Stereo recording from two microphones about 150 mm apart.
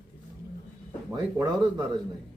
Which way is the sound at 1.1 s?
25° right (ahead or behind).